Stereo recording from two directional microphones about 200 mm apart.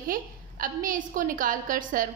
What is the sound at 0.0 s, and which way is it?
A woman's voice, 45° right (ahead or behind).